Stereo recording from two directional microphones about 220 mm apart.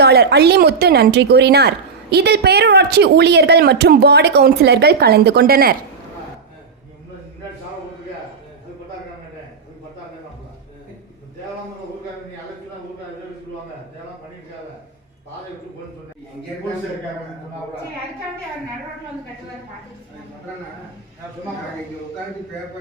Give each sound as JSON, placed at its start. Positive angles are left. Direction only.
{"t": 0.0, "sound": "a woman's voice", "side_deg": -50}